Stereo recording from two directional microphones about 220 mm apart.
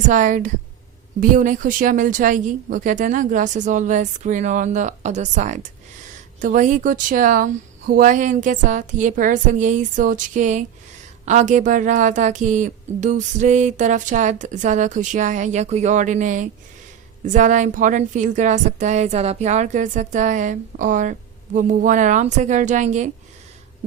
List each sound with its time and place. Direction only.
0.1 s a woman's voice: 35° right (ahead or behind)